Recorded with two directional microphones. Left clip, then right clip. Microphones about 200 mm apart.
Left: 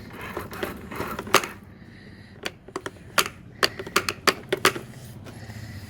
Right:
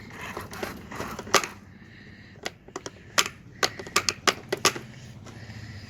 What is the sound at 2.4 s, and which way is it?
Typewriter, 10° left (ahead or behind).